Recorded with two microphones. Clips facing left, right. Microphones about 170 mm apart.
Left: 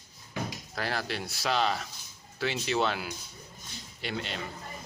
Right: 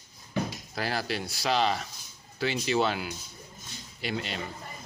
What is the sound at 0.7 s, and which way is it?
Speech, 5° right (ahead or behind).